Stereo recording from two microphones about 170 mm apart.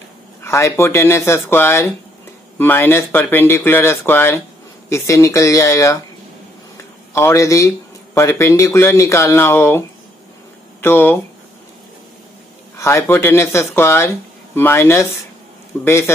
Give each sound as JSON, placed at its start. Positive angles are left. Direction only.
{"t": 0.4, "sound": "speech", "side_deg": 15}
{"t": 7.2, "sound": "speech", "side_deg": 15}
{"t": 12.7, "sound": "speech", "side_deg": 15}